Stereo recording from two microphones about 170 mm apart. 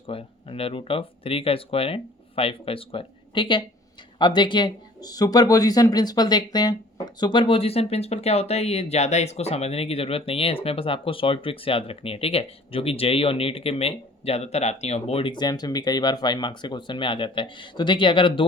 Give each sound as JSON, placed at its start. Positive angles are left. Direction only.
{"t": 0.1, "sound": "speech", "side_deg": 35}